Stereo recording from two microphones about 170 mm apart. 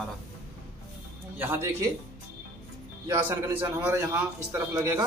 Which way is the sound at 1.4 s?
15° right (ahead or behind).